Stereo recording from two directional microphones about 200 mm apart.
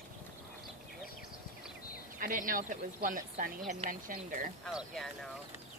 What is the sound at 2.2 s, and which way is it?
Speech, 45° right (ahead or behind).